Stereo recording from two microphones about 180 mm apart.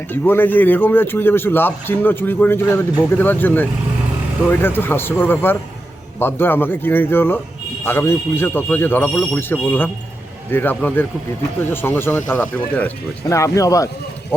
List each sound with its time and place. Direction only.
0.1 s speech: 10° left (ahead or behind)